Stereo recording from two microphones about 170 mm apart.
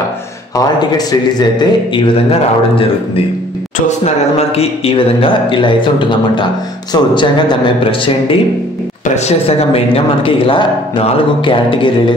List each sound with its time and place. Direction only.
0.6 s speech: 25° left (ahead or behind)
3.8 s speech: 40° left (ahead or behind)